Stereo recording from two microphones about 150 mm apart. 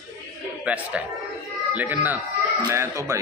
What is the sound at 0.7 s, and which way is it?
Speech, 10° right (ahead or behind).